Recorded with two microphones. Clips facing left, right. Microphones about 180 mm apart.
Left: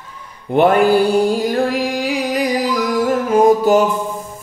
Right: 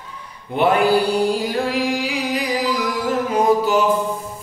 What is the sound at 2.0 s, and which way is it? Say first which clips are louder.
Music: left 4 dB; 45° left (ahead or behind).